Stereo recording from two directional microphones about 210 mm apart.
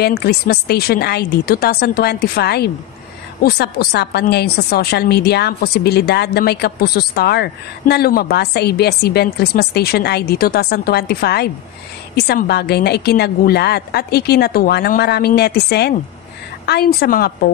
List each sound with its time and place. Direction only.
0.0 s a woman's voice: 50° left (ahead or behind)